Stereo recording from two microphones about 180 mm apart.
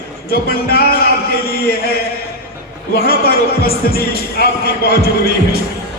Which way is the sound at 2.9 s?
55° left (ahead or behind).